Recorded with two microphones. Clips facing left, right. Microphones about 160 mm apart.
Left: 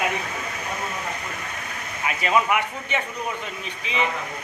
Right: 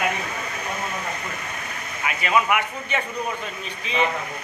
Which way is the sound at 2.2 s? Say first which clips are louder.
Even; 30° left (ahead or behind).